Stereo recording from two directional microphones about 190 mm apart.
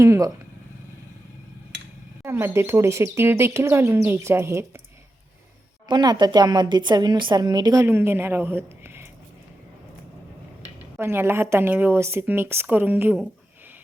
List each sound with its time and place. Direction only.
0.0 s speech: 15° right (ahead or behind)
2.2 s speech: 15° right (ahead or behind)
5.9 s a woman's voice: 20° right (ahead or behind)
10.9 s speech: 10° right (ahead or behind)